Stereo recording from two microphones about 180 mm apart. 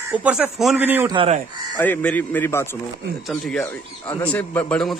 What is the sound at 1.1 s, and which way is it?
Speech, 30° right (ahead or behind).